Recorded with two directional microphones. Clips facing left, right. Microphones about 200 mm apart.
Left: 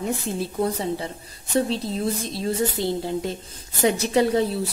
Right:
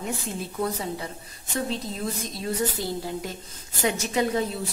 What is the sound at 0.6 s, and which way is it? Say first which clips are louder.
A woman's voice: left 3 dB; 30° left (ahead or behind).